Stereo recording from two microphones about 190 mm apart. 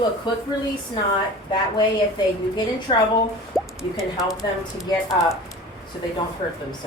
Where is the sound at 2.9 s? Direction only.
25° left (ahead or behind).